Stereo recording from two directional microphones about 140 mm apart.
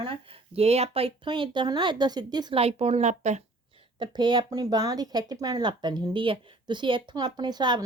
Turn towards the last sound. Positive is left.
turn(degrees=-30)  # may be behind; listen again after turning